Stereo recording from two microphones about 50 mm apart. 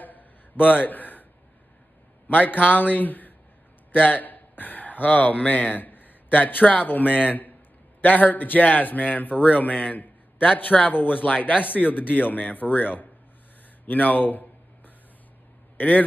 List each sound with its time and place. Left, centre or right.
0.0 s a sound: left
2.2 s a man's voice: left
10.5 s a man's voice: left